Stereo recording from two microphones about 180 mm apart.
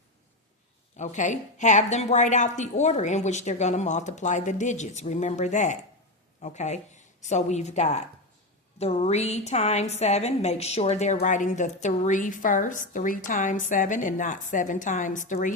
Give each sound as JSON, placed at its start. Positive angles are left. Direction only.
{"t": 0.9, "sound": "a woman's voice", "side_deg": 40}